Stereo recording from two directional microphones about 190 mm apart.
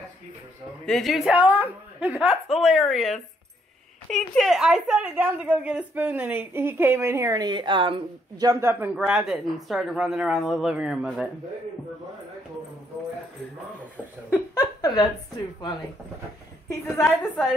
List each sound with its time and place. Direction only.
0.8 s a woman's voice: centre (ahead or behind)
14.3 s a sound: 15° left (ahead or behind)
16.6 s a woman's voice: 15° left (ahead or behind)